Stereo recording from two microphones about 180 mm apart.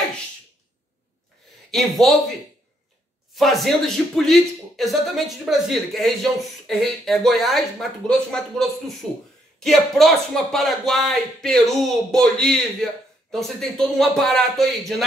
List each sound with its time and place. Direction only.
1.7 s a man's voice: centre (ahead or behind)